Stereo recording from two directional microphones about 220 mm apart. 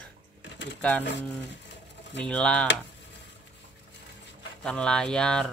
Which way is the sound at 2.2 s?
5° left (ahead or behind).